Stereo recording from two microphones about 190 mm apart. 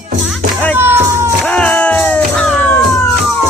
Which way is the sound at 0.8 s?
10° right (ahead or behind).